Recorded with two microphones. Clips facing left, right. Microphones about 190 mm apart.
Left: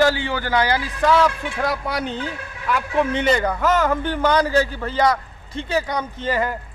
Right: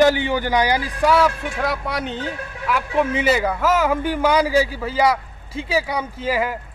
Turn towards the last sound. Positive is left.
turn(degrees=-5)  # may be behind; listen again after turning